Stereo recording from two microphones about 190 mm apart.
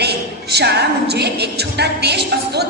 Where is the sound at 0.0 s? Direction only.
60° right (ahead or behind).